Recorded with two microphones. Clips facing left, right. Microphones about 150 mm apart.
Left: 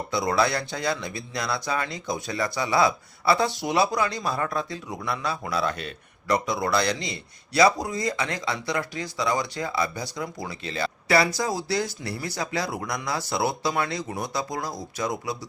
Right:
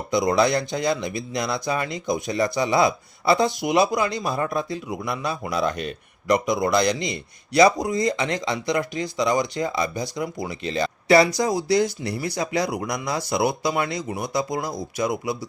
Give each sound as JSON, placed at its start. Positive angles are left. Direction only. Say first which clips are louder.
{"t": 0.1, "sound": "a man's voice", "louder": "right 5 dB", "side_deg": -15}